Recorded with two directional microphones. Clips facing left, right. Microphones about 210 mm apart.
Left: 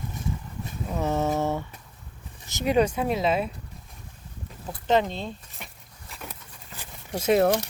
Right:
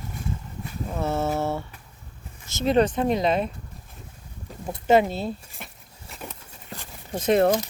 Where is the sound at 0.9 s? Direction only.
15° left (ahead or behind).